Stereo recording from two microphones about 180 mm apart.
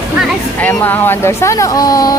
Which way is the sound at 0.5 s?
10° left (ahead or behind).